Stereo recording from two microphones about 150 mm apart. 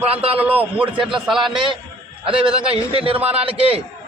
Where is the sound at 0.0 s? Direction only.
40° right (ahead or behind).